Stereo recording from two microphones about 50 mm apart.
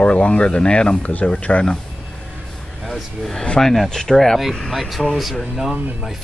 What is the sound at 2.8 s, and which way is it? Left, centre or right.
Speech, centre.